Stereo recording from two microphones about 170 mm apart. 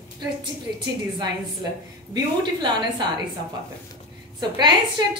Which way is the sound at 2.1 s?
25° right (ahead or behind).